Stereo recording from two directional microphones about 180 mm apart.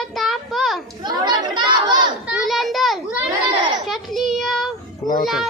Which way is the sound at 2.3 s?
5° right (ahead or behind).